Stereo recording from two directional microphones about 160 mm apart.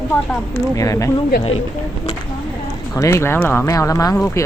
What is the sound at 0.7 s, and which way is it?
Speech, 20° left (ahead or behind).